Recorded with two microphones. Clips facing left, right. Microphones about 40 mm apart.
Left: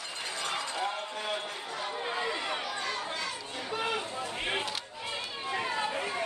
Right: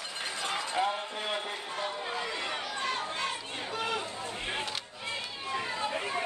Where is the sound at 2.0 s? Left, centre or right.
Centre.